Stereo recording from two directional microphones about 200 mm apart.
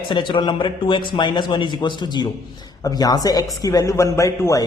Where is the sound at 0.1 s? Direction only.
25° left (ahead or behind).